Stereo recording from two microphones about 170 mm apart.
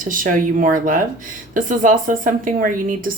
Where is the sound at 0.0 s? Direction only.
50° right (ahead or behind).